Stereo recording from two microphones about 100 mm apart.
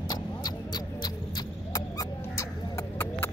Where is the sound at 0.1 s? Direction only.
45° left (ahead or behind).